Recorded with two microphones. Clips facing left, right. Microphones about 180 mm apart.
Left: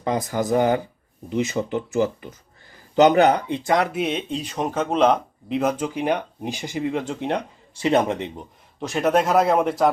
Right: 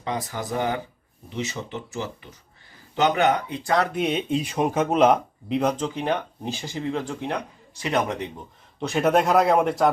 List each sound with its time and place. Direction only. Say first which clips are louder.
0.0 s speech: left 6 dB; 45° left (ahead or behind)
2.9 s speech: left 6 dB; 40° left (ahead or behind)
3.6 s speech: left 1 dB; 20° left (ahead or behind)
3.9 s speech: right 1 dB; centre (ahead or behind)
5.5 s speech: left 1 dB; 10° left (ahead or behind); by 8.4 s 25° left (ahead or behind)
8.8 s speech: even; centre (ahead or behind)